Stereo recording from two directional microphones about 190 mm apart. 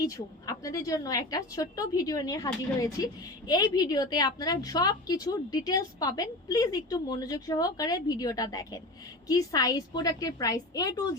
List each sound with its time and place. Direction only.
0.0 s speech: 20° left (ahead or behind)